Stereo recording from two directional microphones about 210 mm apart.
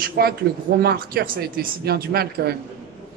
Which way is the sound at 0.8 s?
45° right (ahead or behind).